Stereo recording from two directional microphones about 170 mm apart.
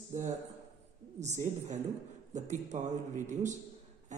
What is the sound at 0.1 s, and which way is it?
Speech, 45° right (ahead or behind).